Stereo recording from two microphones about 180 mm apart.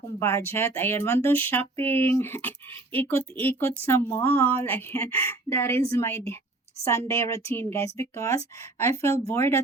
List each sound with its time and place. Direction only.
0.2 s speech: 15° left (ahead or behind)